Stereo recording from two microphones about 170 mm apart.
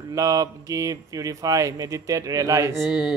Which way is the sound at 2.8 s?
5° right (ahead or behind).